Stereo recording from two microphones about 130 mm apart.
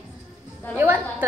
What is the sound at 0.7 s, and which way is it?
Speech, 15° right (ahead or behind).